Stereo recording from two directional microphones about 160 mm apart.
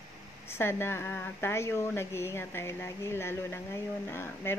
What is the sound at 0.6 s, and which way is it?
Speech, 15° left (ahead or behind).